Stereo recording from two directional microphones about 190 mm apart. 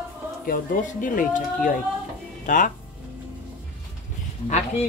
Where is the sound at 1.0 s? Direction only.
45° left (ahead or behind).